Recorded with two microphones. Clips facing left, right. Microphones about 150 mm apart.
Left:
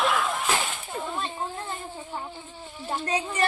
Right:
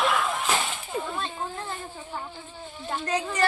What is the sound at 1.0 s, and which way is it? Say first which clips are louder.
Speech: left 1 dB; 10° left (ahead or behind).